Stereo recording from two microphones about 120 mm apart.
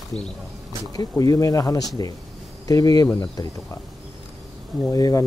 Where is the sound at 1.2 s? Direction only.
30° left (ahead or behind).